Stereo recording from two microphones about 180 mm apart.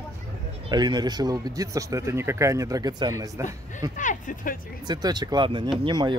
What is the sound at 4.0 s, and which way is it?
Speech, 45° left (ahead or behind).